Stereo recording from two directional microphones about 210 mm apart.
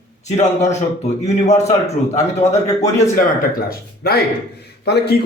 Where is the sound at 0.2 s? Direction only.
35° left (ahead or behind).